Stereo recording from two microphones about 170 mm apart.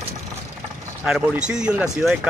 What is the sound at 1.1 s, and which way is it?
Speech, 5° right (ahead or behind).